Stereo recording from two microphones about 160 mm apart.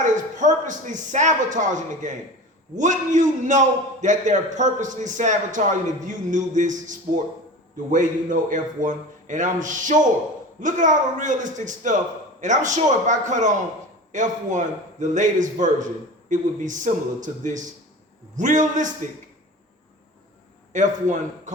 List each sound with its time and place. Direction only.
0.0 s a man's voice: 50° right (ahead or behind)
20.7 s a man's voice: 50° right (ahead or behind)